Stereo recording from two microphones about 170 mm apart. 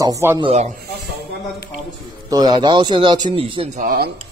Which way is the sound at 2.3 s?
25° right (ahead or behind).